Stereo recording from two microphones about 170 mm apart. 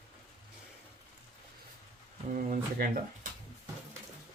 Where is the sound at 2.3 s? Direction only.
55° right (ahead or behind).